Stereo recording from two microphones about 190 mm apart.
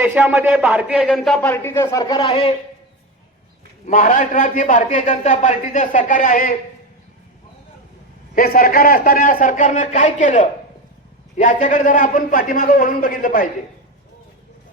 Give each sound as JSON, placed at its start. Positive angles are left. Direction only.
{"t": 0.0, "sound": "a man's voice", "side_deg": -10}
{"t": 3.8, "sound": "a man's voice", "side_deg": 40}
{"t": 8.4, "sound": "a man's voice", "side_deg": 50}